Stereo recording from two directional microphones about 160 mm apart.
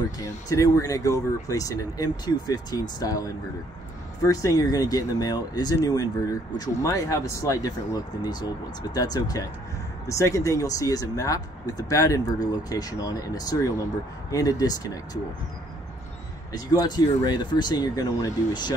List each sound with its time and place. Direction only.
0.2 s speech: 20° left (ahead or behind)
16.5 s speech: 25° left (ahead or behind)